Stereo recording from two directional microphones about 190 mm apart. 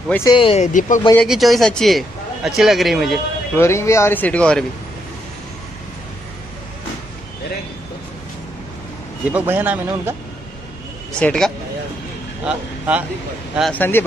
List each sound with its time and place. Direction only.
0.1 s speech: 15° left (ahead or behind)
0.4 s speech: 35° left (ahead or behind)
1.1 s a man's voice: centre (ahead or behind)
3.5 s speech: 15° left (ahead or behind)
9.3 s speech: 10° right (ahead or behind)
11.1 s a man's voice: 5° left (ahead or behind)
12.4 s speech: 5° right (ahead or behind)
13.6 s speech: 5° left (ahead or behind)